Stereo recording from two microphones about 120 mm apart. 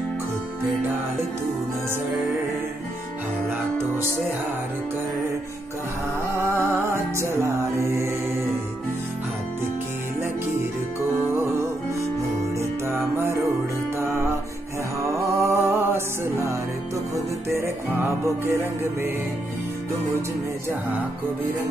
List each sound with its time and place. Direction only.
6.3 s music: 20° right (ahead or behind)
12.5 s music: 20° right (ahead or behind)
15.3 s music: 25° right (ahead or behind)
18.2 s music: 20° right (ahead or behind)